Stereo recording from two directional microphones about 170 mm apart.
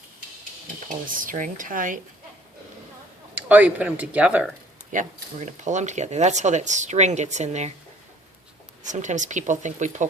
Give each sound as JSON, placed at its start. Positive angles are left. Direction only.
{"t": 0.9, "sound": "speech", "side_deg": -55}
{"t": 3.5, "sound": "speech", "side_deg": -10}
{"t": 4.9, "sound": "speech", "side_deg": -45}
{"t": 8.8, "sound": "speech", "side_deg": -45}